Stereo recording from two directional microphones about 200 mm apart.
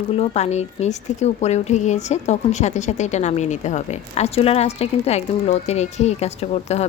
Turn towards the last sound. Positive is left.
turn(degrees=30)  # may be behind; listen again after turning